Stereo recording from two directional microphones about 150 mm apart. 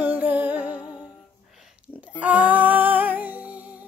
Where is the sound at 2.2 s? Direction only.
10° right (ahead or behind).